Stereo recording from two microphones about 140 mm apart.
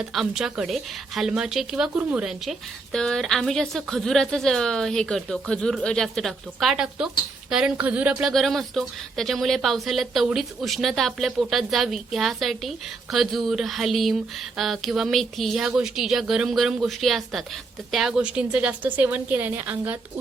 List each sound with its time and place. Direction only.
0.0 s a woman's voice: centre (ahead or behind)
8.3 s a woman's voice: centre (ahead or behind)